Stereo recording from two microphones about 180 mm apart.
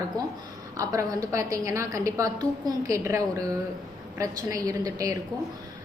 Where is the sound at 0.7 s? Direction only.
20° right (ahead or behind).